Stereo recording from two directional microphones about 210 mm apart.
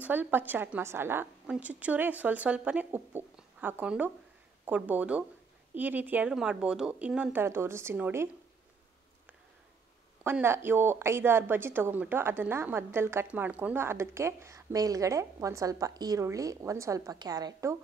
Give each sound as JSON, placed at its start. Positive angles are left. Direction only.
{"t": 0.0, "sound": "a woman's voice", "side_deg": -10}
{"t": 10.2, "sound": "a woman's voice", "side_deg": -10}